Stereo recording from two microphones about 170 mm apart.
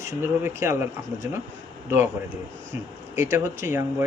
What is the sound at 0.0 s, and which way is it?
Speech, 15° right (ahead or behind).